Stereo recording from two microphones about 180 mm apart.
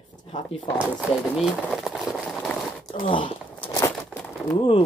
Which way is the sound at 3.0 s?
30° left (ahead or behind).